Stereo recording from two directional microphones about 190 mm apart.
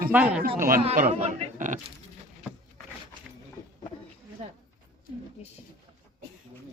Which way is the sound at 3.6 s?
20° left (ahead or behind).